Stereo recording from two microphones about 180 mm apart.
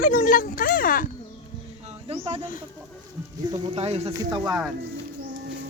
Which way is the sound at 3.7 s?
35° right (ahead or behind).